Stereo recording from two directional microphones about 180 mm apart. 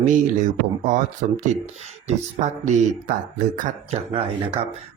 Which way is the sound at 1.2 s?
50° right (ahead or behind).